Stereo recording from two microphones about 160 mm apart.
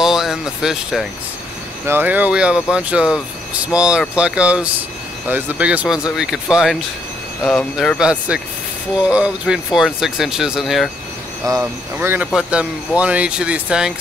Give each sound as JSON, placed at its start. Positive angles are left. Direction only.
{"t": 0.0, "sound": "speech", "side_deg": 0}
{"t": 8.0, "sound": "speech", "side_deg": -5}